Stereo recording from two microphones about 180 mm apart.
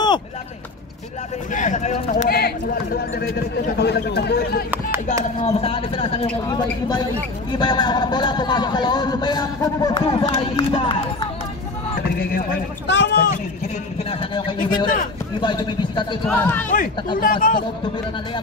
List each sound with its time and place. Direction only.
1.5 s a man's voice: 45° left (ahead or behind)
2.2 s speech: 55° left (ahead or behind)
5.4 s a man's voice: 30° left (ahead or behind)
7.5 s speech: 25° left (ahead or behind)
12.2 s speech: 55° left (ahead or behind)
14.3 s speech: 25° left (ahead or behind)
16.3 s speech: 10° left (ahead or behind)
16.7 s speech: 50° left (ahead or behind)